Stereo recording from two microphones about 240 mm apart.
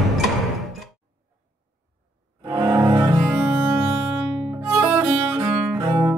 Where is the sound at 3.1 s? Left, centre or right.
Centre.